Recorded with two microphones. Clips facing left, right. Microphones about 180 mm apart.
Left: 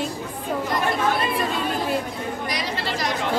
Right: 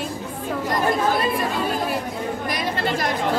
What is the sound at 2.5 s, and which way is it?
Chatter, 50° right (ahead or behind).